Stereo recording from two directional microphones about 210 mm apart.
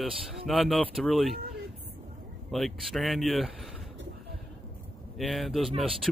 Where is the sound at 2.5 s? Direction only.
Centre (ahead or behind).